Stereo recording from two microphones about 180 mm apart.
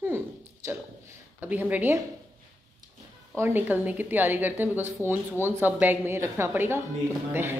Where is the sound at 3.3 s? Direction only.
10° right (ahead or behind).